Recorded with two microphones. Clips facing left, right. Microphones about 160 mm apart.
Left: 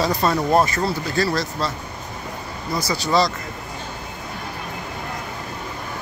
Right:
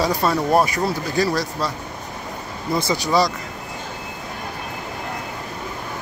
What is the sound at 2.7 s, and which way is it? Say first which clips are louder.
Speech: right 1 dB; 20° right (ahead or behind).